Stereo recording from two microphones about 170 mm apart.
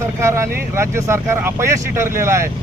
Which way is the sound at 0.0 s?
15° right (ahead or behind).